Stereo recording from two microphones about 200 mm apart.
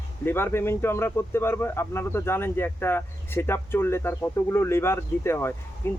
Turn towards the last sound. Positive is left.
turn(degrees=10)  # may be behind; listen again after turning